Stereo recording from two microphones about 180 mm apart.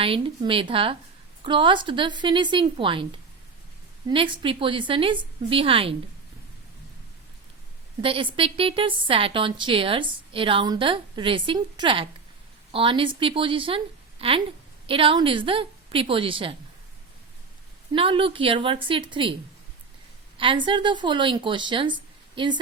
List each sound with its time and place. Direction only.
0.0 s a woman's voice: 30° right (ahead or behind)
4.1 s a woman's voice: 30° right (ahead or behind)
8.0 s a woman's voice: 30° right (ahead or behind)
17.9 s a woman's voice: 30° right (ahead or behind)
20.4 s a woman's voice: 25° right (ahead or behind)